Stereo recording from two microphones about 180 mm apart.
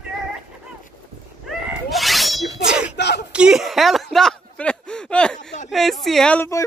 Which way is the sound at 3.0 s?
70° left (ahead or behind).